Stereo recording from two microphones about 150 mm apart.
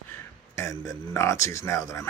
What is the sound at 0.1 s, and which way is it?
Speech, 20° left (ahead or behind).